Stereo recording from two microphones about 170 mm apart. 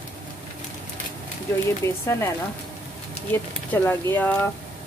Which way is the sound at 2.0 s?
15° left (ahead or behind).